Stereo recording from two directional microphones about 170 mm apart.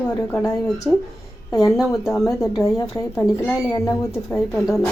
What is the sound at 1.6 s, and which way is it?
Speech, centre (ahead or behind).